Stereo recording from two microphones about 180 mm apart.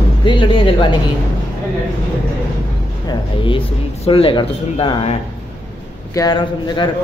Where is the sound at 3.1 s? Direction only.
30° left (ahead or behind).